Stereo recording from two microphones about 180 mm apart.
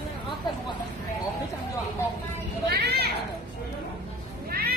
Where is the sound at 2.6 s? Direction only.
60° right (ahead or behind).